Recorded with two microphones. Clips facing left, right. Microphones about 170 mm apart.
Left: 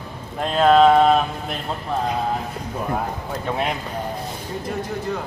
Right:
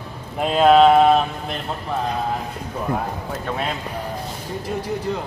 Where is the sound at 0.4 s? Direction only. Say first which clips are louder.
Right 1 dB; 5° right (ahead or behind).